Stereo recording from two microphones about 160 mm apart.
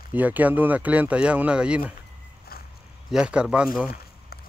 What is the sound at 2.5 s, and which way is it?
Dog, 70° left (ahead or behind).